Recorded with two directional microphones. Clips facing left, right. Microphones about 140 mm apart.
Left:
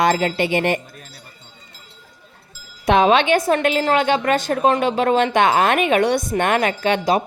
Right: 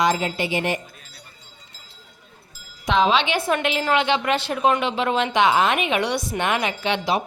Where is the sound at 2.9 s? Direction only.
55° left (ahead or behind).